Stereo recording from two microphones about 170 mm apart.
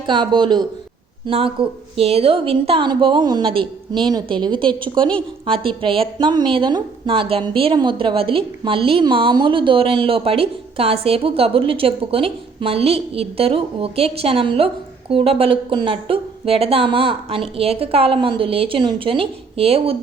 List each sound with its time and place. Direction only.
0.0 s a woman's voice: 25° right (ahead or behind)